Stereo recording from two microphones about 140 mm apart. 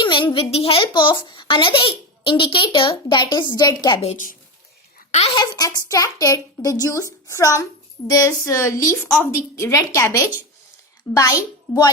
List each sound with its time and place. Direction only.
0.0 s a woman's voice: 35° left (ahead or behind)
4.0 s a woman's voice: 55° left (ahead or behind)
5.3 s a child's voice: 30° left (ahead or behind)